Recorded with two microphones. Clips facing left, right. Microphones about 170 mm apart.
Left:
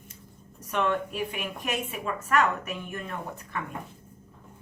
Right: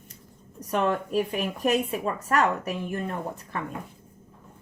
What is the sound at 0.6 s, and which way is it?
A woman's voice, 35° right (ahead or behind).